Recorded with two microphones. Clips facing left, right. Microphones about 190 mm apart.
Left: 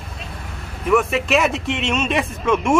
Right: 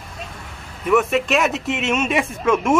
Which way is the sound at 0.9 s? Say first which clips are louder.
Even; centre (ahead or behind).